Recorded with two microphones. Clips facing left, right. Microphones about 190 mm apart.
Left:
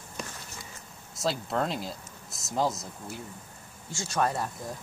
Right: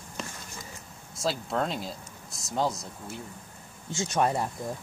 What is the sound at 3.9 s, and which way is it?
Speech, 20° right (ahead or behind).